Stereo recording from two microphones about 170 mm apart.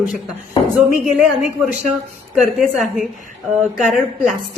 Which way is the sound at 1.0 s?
5° right (ahead or behind).